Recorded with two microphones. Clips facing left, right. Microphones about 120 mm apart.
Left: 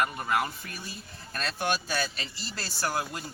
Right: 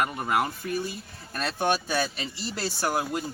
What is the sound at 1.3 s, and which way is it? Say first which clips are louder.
Speech: right 4 dB; 20° right (ahead or behind).